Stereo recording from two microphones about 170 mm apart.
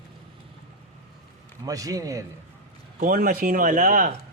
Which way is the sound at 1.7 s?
20° right (ahead or behind).